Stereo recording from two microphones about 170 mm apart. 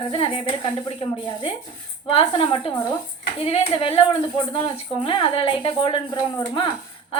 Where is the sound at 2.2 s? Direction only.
30° left (ahead or behind).